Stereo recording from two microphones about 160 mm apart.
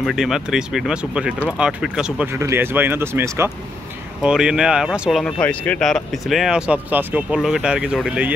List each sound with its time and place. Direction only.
0.0 s speech: 5° right (ahead or behind)
2.3 s speech: 15° right (ahead or behind)
4.2 s speech: 5° right (ahead or behind)
5.2 s speech: 10° left (ahead or behind); by 8.3 s 5° right (ahead or behind)